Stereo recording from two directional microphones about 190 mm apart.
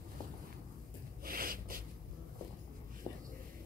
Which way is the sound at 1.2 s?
50° right (ahead or behind).